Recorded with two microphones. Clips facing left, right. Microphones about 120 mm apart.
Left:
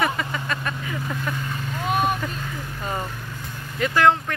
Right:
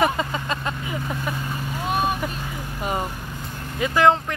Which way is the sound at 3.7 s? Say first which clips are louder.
Right 1 dB; 15° right (ahead or behind).